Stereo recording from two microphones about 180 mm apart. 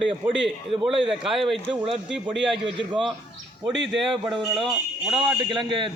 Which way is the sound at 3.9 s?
Centre (ahead or behind).